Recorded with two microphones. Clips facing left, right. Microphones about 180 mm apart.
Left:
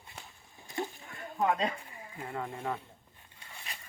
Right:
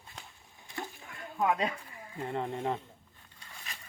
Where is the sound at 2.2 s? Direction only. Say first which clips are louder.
Right 4 dB; 25° right (ahead or behind).